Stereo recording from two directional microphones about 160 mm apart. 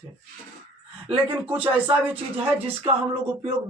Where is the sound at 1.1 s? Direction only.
35° right (ahead or behind).